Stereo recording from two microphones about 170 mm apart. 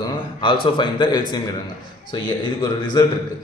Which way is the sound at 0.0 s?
30° left (ahead or behind).